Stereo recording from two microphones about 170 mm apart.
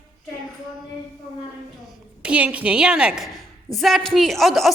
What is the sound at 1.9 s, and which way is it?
A woman's voice, 5° right (ahead or behind).